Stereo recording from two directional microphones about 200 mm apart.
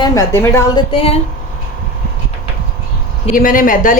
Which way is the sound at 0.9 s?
30° left (ahead or behind).